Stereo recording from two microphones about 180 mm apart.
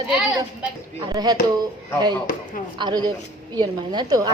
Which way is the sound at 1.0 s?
20° right (ahead or behind).